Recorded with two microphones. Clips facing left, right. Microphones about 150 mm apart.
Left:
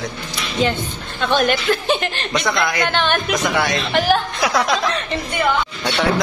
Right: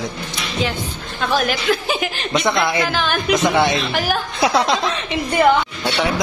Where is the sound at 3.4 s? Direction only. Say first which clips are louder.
Right 3 dB; 25° right (ahead or behind).